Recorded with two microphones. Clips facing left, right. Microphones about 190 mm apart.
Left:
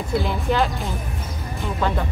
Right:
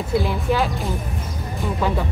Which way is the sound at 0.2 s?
Centre (ahead or behind).